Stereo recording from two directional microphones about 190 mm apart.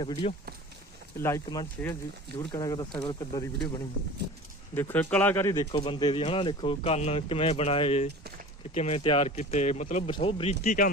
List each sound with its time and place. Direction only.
0.0 s speech: 25° left (ahead or behind)
4.7 s speech: 10° left (ahead or behind); by 10.8 s 40° left (ahead or behind)